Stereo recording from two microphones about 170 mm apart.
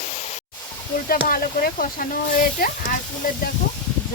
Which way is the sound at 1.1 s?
60° left (ahead or behind).